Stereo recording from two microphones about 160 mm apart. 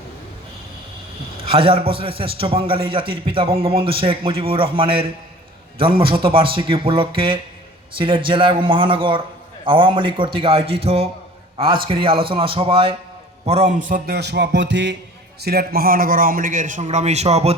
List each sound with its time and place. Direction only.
1.4 s a man's voice: 35° right (ahead or behind); by 14.0 s 55° right (ahead or behind)
14.1 s music: 90° right
15.4 s a man's voice: 80° right; by 17.5 s 40° right (ahead or behind)